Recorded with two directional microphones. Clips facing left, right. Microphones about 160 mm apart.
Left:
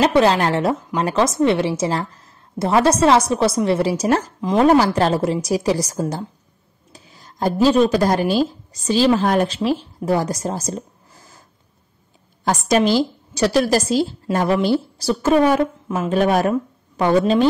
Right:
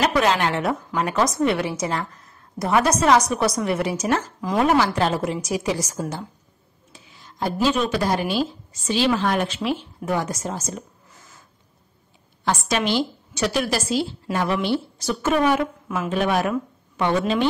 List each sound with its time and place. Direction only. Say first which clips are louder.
0.0 s a woman's voice: left 5 dB; 30° left (ahead or behind)
4.4 s speech: left 6 dB; 25° left (ahead or behind)
4.6 s a woman's voice: left 5 dB; 35° left (ahead or behind)
6.9 s a sound: left 3 dB; 40° left (ahead or behind)
7.6 s a woman's voice: left 7 dB; 35° left (ahead or behind)
12.4 s a woman's voice: left 6 dB; 40° left (ahead or behind)